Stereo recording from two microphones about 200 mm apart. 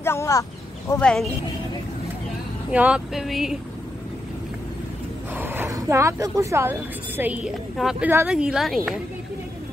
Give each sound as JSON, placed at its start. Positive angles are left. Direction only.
{"t": 0.0, "sound": "a sound", "side_deg": 15}
{"t": 2.7, "sound": "speech", "side_deg": -5}
{"t": 5.3, "sound": "speech", "side_deg": -10}